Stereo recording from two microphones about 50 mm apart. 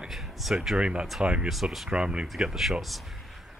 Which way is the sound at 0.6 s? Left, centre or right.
Centre.